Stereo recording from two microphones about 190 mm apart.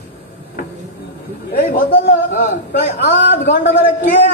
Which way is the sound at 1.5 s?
50° left (ahead or behind).